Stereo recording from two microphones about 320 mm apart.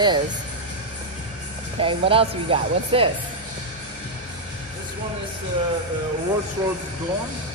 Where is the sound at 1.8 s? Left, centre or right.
Centre.